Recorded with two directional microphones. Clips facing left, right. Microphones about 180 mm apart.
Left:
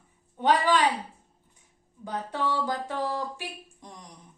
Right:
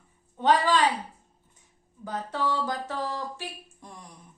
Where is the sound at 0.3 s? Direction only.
15° left (ahead or behind).